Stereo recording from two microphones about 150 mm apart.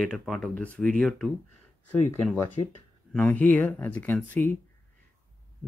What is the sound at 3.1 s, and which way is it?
Speech, 10° left (ahead or behind).